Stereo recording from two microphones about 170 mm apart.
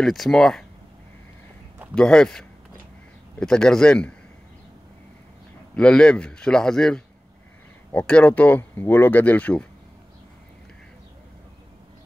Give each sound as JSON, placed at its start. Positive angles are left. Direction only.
{"t": 0.0, "sound": "a man's voice", "side_deg": 0}
{"t": 2.0, "sound": "a man's voice", "side_deg": 5}
{"t": 5.8, "sound": "a man's voice", "side_deg": 5}